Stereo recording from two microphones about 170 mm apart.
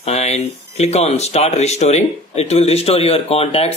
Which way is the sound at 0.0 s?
40° left (ahead or behind).